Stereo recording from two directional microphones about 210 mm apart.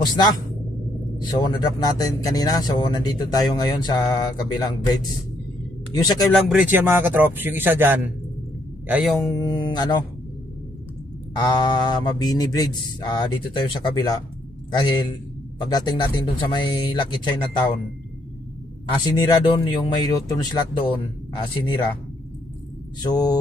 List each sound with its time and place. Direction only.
0.0 s speech: 20° left (ahead or behind)
6.5 s a man's voice: 10° right (ahead or behind)
9.2 s speech: 20° left (ahead or behind)
11.3 s speech: 20° left (ahead or behind)
18.9 s speech: 20° left (ahead or behind)
23.0 s speech: 20° left (ahead or behind)